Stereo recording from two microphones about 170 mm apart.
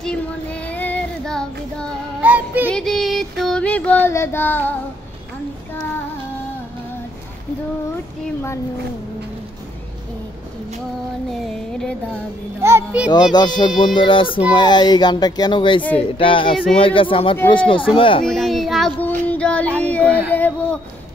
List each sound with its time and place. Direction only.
0.0 s child singing: 5° left (ahead or behind)
2.2 s music: 10° right (ahead or behind)
2.7 s child singing: centre (ahead or behind)
12.6 s a child's voice: 10° right (ahead or behind)
13.3 s a child's voice: 25° left (ahead or behind)
18.2 s child singing: centre (ahead or behind)
19.2 s music: 5° left (ahead or behind)
19.8 s speech: 10° left (ahead or behind)